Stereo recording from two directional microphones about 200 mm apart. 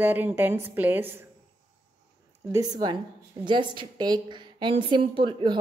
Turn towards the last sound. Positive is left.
turn(degrees=-25)  # may be behind; listen again after turning